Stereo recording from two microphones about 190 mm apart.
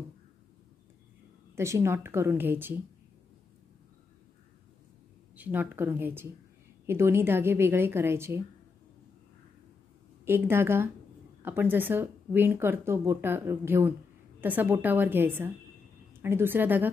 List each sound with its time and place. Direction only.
1.5 s speech: 15° right (ahead or behind)
5.3 s speech: 10° right (ahead or behind)
10.2 s speech: 10° right (ahead or behind)